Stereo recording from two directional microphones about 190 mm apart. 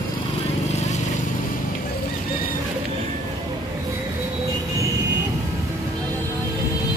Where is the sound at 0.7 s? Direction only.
35° left (ahead or behind).